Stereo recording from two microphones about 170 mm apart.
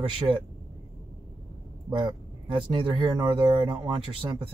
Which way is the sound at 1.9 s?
30° right (ahead or behind).